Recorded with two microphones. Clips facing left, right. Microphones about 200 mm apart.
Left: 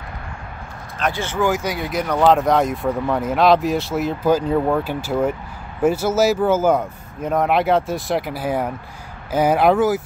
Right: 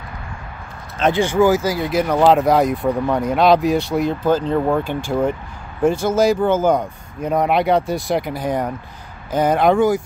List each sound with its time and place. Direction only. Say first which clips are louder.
1.0 s speech: right 6 dB; 15° right (ahead or behind); by 10.0 s 5° left (ahead or behind)